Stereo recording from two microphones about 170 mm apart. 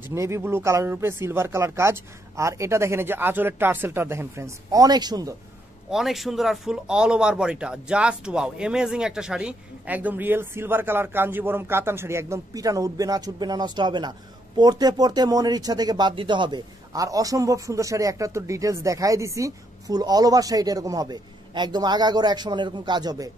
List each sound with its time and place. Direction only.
0.1 s speech: 15° right (ahead or behind)
5.9 s speech: centre (ahead or behind); by 23.3 s 20° right (ahead or behind)